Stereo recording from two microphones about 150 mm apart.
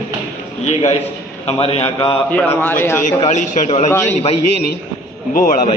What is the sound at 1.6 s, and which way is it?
Speech, 40° left (ahead or behind).